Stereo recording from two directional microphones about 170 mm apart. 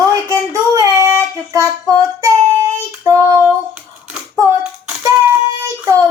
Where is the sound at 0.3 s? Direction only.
20° right (ahead or behind).